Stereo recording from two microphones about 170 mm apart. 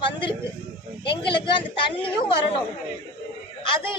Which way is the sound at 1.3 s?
30° left (ahead or behind).